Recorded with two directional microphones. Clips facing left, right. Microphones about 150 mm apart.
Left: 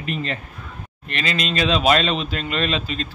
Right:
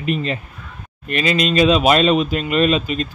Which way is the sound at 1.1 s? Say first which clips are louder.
Right 7 dB; 15° right (ahead or behind).